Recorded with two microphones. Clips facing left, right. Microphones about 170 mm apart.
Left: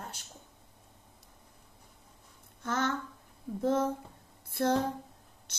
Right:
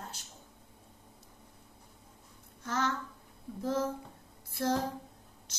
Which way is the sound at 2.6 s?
55° left (ahead or behind).